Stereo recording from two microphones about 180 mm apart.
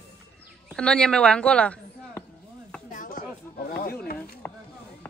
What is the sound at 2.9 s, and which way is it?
Chopping, 45° left (ahead or behind).